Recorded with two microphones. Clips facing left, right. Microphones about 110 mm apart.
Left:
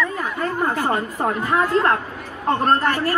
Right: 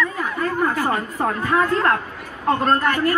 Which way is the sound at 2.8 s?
30° left (ahead or behind).